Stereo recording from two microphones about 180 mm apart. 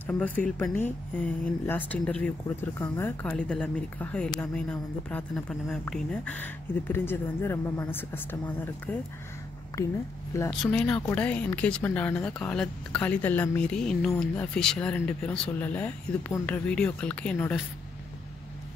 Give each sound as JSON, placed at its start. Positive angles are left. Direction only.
{"t": 0.5, "sound": "a woman's voice", "side_deg": 10}
{"t": 10.5, "sound": "a woman's voice", "side_deg": 5}